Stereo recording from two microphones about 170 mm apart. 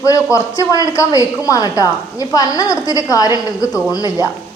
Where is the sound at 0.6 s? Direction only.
20° left (ahead or behind).